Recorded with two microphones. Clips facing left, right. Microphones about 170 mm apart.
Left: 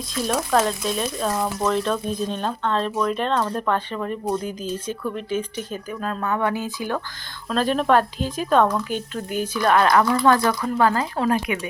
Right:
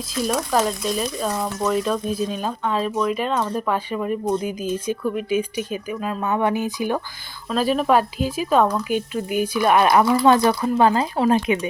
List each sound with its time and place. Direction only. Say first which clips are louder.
0.1 s speech: even; centre (ahead or behind); by 7.0 s 15° right (ahead or behind)
7.5 s speech: right 1 dB; 5° right (ahead or behind)
9.8 s speech: right 2 dB; 25° right (ahead or behind)